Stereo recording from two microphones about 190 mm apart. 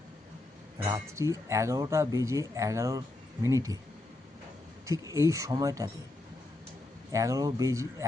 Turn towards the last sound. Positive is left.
turn(degrees=-15)  # may be behind; listen again after turning